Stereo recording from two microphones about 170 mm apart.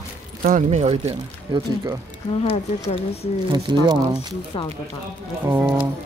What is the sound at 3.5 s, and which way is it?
Speech, 25° right (ahead or behind).